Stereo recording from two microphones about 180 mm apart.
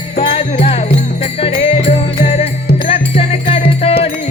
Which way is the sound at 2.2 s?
35° left (ahead or behind).